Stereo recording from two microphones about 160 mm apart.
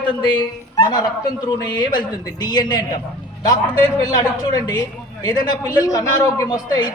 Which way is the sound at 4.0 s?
25° left (ahead or behind).